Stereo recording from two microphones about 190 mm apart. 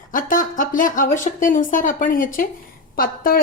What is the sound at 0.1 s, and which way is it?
A woman's voice, 45° left (ahead or behind).